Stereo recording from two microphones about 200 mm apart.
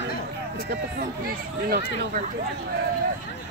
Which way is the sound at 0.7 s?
50° right (ahead or behind).